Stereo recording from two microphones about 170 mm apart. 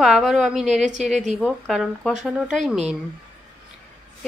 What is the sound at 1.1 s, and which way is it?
Speech, 45° right (ahead or behind).